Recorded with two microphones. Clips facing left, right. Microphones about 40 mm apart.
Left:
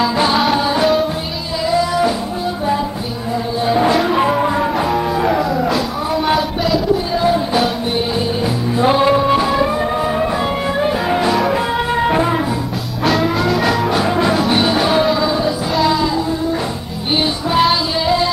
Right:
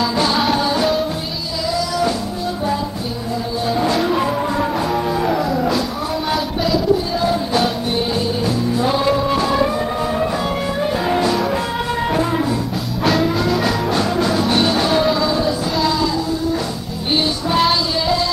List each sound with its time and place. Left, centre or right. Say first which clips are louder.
0.0 s music: left 3 dB; centre
1.7 s music: left 5 dB; left
3.6 s music: left 4 dB; left
4.6 s music: left 2 dB; centre
8.7 s music: left 6 dB; left
10.8 s music: left 1 dB; centre
11.9 s music: left 3 dB; left
13.0 s music: left 2 dB; centre
14.0 s music: left 3 dB; left
14.3 s music: left 2 dB; centre
17.1 s music: left 1 dB; centre